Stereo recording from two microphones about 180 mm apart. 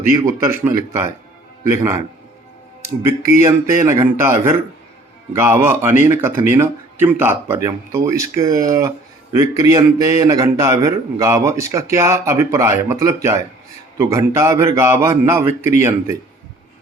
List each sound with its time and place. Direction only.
0.2 s a man's voice: 15° right (ahead or behind)
3.0 s a man's voice: 15° right (ahead or behind)